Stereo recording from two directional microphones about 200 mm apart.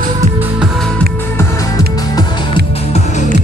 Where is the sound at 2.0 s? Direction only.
20° left (ahead or behind).